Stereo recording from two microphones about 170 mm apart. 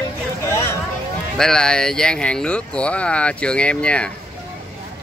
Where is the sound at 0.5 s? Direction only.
15° left (ahead or behind).